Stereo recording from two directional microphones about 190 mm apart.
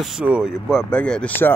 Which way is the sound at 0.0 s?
5° right (ahead or behind).